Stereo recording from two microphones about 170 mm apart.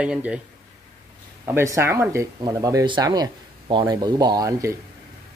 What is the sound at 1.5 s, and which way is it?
Speech, 15° right (ahead or behind).